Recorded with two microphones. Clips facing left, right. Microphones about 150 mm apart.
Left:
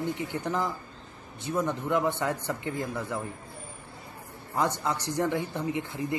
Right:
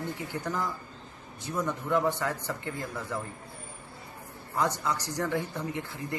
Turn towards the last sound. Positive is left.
turn(degrees=20)  # may be behind; listen again after turning